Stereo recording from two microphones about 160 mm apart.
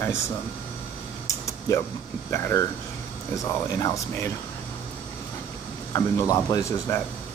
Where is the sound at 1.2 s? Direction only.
20° left (ahead or behind).